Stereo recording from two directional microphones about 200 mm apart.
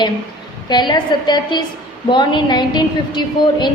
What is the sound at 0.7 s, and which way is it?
A woman's voice, 20° left (ahead or behind).